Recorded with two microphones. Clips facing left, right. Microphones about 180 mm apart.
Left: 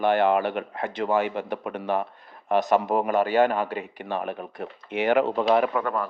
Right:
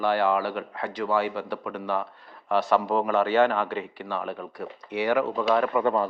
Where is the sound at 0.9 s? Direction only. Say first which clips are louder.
Left 2 dB; 20° left (ahead or behind).